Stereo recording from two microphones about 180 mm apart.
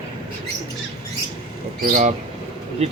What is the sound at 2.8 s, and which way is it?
Speech, 35° right (ahead or behind).